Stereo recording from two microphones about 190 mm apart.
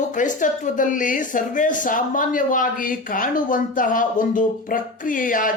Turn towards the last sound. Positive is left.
turn(degrees=45)  # may be behind; listen again after turning